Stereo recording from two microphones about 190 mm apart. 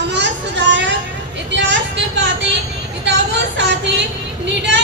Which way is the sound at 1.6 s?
65° right (ahead or behind).